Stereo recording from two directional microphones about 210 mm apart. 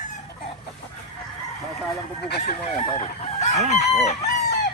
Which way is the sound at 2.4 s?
30° left (ahead or behind).